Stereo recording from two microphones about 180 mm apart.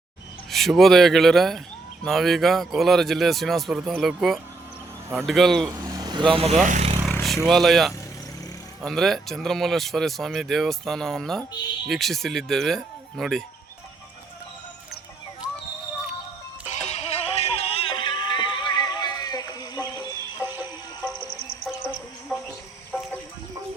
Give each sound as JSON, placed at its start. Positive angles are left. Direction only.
{"t": 0.5, "sound": "speech", "side_deg": 0}
{"t": 5.6, "sound": "speech", "side_deg": -20}
{"t": 7.1, "sound": "vehicle", "side_deg": 5}
{"t": 7.4, "sound": "speech", "side_deg": 0}
{"t": 15.4, "sound": "a sound", "side_deg": 20}
{"t": 16.6, "sound": "music", "side_deg": 40}